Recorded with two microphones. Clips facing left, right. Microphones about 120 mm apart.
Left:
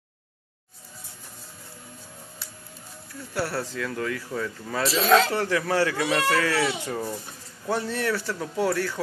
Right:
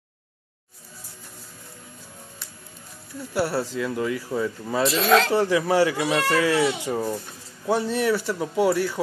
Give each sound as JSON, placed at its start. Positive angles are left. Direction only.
{"t": 3.3, "sound": "speech", "side_deg": -20}
{"t": 4.8, "sound": "speech", "side_deg": 0}
{"t": 5.3, "sound": "speech", "side_deg": -15}
{"t": 5.9, "sound": "speech", "side_deg": -5}